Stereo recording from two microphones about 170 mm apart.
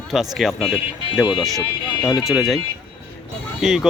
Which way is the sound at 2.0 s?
25° left (ahead or behind).